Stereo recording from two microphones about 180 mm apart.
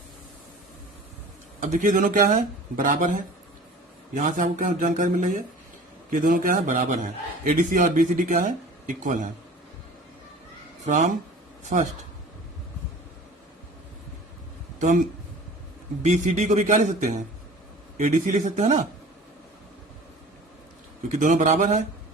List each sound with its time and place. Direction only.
1.6 s a man's voice: 45° right (ahead or behind)
10.8 s a man's voice: 45° right (ahead or behind)
14.8 s speech: 45° right (ahead or behind)
16.0 s a man's voice: 40° right (ahead or behind)
21.2 s a man's voice: 45° right (ahead or behind)